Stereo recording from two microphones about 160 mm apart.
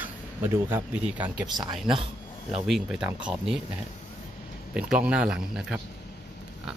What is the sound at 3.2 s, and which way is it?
Speech, 5° right (ahead or behind).